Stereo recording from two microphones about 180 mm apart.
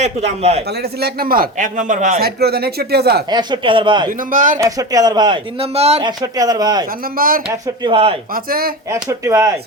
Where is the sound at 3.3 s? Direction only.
25° right (ahead or behind).